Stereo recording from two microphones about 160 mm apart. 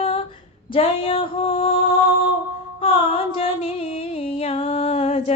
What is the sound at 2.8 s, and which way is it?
Music, 35° left (ahead or behind).